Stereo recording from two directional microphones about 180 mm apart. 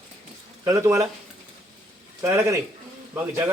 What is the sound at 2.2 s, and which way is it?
Speech, 10° right (ahead or behind).